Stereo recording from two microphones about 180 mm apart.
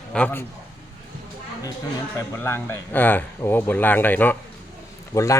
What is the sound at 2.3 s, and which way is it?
Speech, 15° left (ahead or behind).